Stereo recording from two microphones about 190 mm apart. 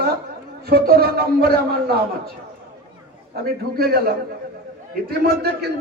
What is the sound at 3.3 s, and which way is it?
A man's voice, 55° right (ahead or behind).